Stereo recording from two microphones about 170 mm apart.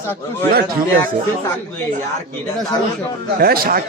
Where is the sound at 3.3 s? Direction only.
60° right (ahead or behind).